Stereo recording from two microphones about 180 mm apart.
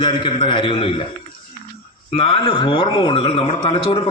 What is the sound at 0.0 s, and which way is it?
A man's voice, 25° left (ahead or behind).